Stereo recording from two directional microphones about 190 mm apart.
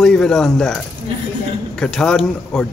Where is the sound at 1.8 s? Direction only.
5° left (ahead or behind).